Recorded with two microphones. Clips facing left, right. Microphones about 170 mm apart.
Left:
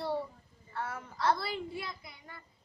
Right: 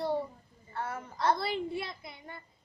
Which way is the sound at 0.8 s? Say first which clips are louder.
Right 2 dB; centre (ahead or behind).